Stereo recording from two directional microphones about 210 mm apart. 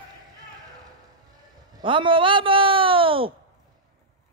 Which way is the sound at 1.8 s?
25° right (ahead or behind).